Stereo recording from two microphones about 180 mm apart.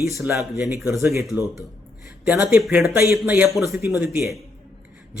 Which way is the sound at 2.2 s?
5° right (ahead or behind).